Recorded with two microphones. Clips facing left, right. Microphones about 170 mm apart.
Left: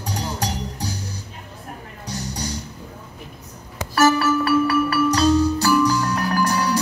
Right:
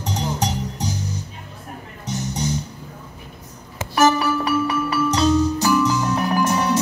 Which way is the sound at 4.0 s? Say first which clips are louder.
Even; 20° right (ahead or behind).